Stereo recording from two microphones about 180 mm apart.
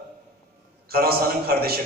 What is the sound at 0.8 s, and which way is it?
Speech, 60° right (ahead or behind).